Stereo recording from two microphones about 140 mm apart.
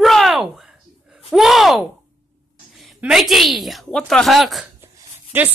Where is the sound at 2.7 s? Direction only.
Centre (ahead or behind).